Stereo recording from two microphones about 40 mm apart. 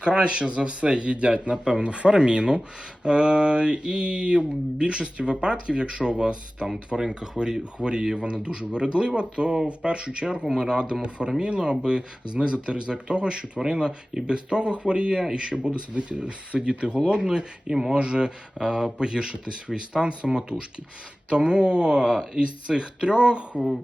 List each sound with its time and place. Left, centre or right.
0.0 s speech: right
10.4 s speech: centre
17.7 s speech: centre
17.9 s speech: right